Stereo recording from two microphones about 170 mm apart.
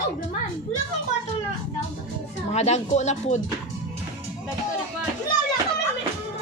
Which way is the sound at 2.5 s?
40° left (ahead or behind).